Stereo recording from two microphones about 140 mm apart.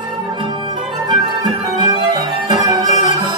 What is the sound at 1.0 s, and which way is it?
Music, 30° right (ahead or behind).